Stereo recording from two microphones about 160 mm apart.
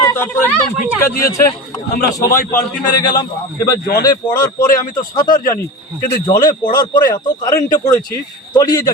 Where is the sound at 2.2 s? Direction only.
20° left (ahead or behind).